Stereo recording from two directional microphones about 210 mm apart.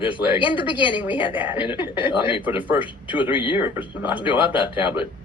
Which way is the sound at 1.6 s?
25° left (ahead or behind).